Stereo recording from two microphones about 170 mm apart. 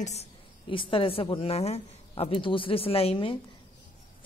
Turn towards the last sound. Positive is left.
turn(degrees=35)  # may be behind; listen again after turning